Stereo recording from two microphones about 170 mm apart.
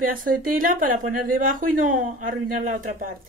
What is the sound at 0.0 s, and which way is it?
Speech, 55° right (ahead or behind).